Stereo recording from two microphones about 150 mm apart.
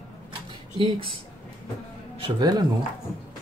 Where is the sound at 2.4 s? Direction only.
30° right (ahead or behind).